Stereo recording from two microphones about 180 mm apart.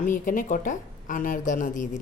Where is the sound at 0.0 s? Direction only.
50° left (ahead or behind).